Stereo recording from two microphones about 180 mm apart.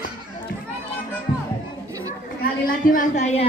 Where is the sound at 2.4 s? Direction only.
50° left (ahead or behind).